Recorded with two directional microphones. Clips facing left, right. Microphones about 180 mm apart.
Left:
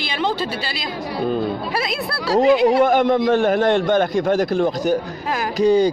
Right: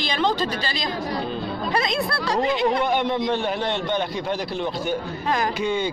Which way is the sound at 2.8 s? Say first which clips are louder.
Left 6 dB; 45° left (ahead or behind).